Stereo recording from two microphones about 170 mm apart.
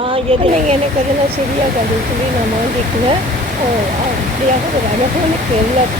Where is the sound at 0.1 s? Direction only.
35° right (ahead or behind).